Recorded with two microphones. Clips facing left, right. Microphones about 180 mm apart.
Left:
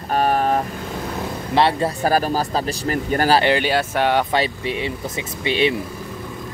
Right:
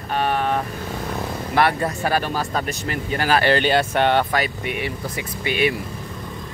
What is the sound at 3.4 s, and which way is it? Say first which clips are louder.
Speech: right 1 dB; 10° left (ahead or behind).